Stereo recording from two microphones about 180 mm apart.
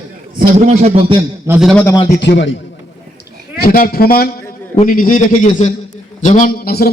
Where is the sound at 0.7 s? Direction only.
35° right (ahead or behind).